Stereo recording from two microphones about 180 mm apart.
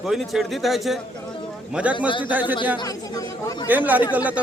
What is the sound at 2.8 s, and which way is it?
Speech, 20° left (ahead or behind).